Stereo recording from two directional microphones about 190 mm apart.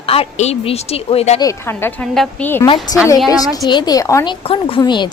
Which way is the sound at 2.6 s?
25° left (ahead or behind).